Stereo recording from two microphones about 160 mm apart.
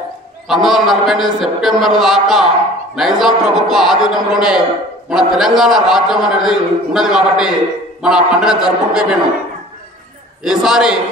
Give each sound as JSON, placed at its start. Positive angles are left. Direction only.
{"t": 0.5, "sound": "a man's voice", "side_deg": 0}
{"t": 10.4, "sound": "a man's voice", "side_deg": -5}